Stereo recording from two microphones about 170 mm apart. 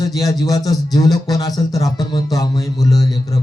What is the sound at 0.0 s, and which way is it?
Speech, 20° left (ahead or behind).